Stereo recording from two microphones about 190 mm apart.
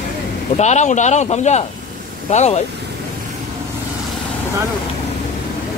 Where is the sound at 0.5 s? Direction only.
35° left (ahead or behind).